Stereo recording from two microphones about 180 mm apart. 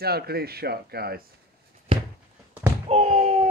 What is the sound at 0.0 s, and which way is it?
Speech, 60° right (ahead or behind).